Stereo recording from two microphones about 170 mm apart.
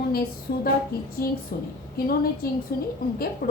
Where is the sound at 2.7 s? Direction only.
65° left (ahead or behind).